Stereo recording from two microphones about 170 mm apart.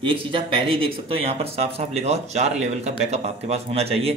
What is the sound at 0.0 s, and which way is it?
A man's voice, 30° right (ahead or behind).